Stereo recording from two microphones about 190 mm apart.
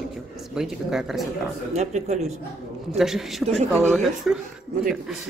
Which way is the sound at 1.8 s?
35° right (ahead or behind).